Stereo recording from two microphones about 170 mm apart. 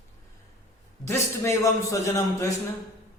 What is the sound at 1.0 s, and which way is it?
Speech, 15° left (ahead or behind).